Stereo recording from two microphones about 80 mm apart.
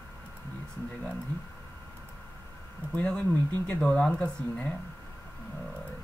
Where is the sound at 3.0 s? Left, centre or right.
Centre.